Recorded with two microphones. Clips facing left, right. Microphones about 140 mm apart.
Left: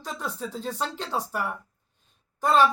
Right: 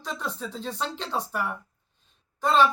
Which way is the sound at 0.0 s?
10° left (ahead or behind).